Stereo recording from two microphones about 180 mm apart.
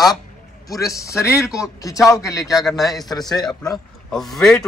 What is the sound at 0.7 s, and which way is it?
Speech, 20° left (ahead or behind).